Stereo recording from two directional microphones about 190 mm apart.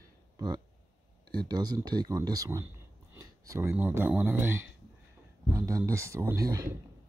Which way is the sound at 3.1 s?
15° right (ahead or behind).